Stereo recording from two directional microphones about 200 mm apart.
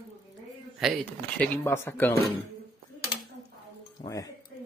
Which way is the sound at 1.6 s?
10° left (ahead or behind).